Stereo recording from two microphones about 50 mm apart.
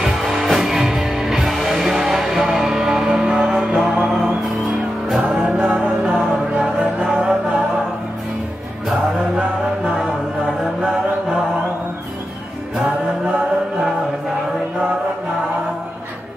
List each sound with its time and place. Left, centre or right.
0.0 s music: centre
5.3 s music: centre
10.4 s mantra: centre